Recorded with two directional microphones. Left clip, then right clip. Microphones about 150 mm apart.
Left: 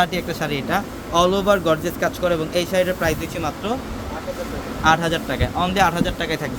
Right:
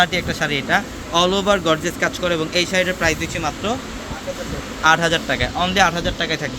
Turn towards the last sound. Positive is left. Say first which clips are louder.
# right 2 dB
turn(degrees=0)  # may be behind; listen again after turning